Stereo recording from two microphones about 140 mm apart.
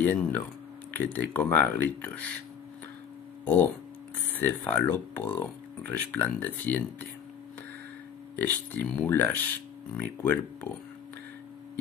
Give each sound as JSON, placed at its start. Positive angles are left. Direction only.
{"t": 0.0, "sound": "speech", "side_deg": 10}
{"t": 3.4, "sound": "speech", "side_deg": 15}
{"t": 8.4, "sound": "speech", "side_deg": 10}